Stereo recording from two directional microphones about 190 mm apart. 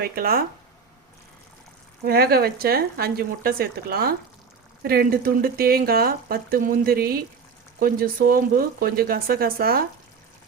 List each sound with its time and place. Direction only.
0.0 s speech: 50° right (ahead or behind)
2.0 s speech: 55° right (ahead or behind)